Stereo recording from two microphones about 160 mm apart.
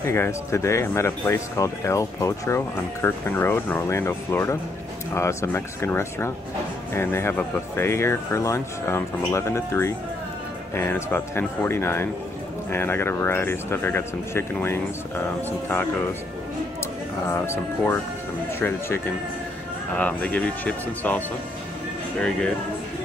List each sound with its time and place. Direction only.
0.0 s speech: 15° left (ahead or behind)
17.3 s speech: 15° left (ahead or behind)